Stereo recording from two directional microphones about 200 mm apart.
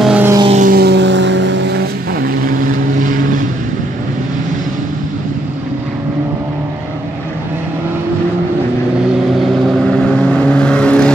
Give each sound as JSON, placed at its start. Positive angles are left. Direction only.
{"t": 0.0, "sound": "vehicle", "side_deg": -10}
{"t": 0.4, "sound": "vehicle", "side_deg": -30}
{"t": 0.7, "sound": "vehicle", "side_deg": -55}
{"t": 9.9, "sound": "vehicle", "side_deg": 5}